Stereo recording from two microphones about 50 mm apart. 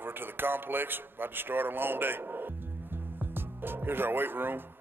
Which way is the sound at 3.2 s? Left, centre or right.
Right.